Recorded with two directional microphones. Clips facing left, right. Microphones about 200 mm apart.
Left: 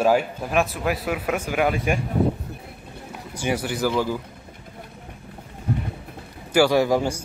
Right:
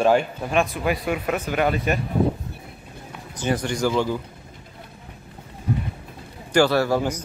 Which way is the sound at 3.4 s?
10° left (ahead or behind).